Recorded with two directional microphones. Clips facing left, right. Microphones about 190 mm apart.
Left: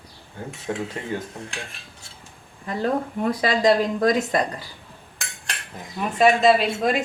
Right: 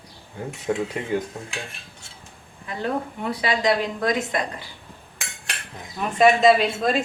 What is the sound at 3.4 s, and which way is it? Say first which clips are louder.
Speech: left 3 dB; 45° left (ahead or behind).